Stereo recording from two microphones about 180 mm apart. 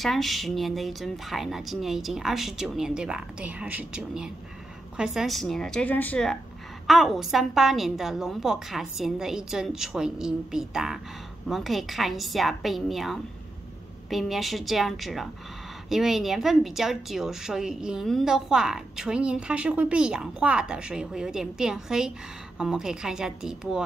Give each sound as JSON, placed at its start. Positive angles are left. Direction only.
{"t": 0.0, "sound": "a woman's voice", "side_deg": 0}